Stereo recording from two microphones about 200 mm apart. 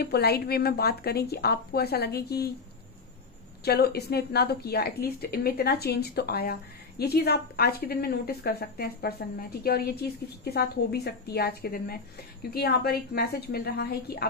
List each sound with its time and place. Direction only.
0.0 s a woman's voice: 55° left (ahead or behind)
3.6 s a woman's voice: 55° left (ahead or behind)